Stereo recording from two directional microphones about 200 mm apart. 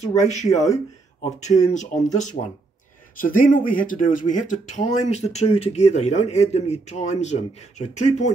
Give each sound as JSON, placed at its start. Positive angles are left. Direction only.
{"t": 0.0, "sound": "speech", "side_deg": 35}
{"t": 1.7, "sound": "speech", "side_deg": 35}